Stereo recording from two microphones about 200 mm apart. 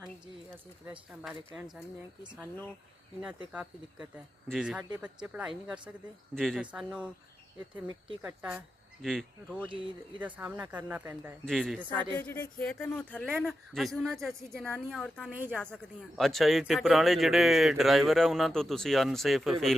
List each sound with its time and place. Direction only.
0.9 s speech: 5° right (ahead or behind)
3.2 s speech: 5° right (ahead or behind)
8.2 s speech: 5° right (ahead or behind)
9.6 s speech: 25° right (ahead or behind)
10.2 s speech: 10° right (ahead or behind)
11.4 s speech: centre (ahead or behind)
12.1 s speech: 10° left (ahead or behind)
15.3 s speech: 10° right (ahead or behind)
15.5 s speech: 5° left (ahead or behind)